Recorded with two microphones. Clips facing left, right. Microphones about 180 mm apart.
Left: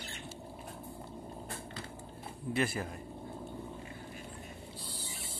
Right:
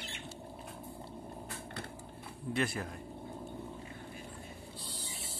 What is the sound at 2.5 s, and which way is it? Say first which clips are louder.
Speech: left 1 dB; 5° left (ahead or behind).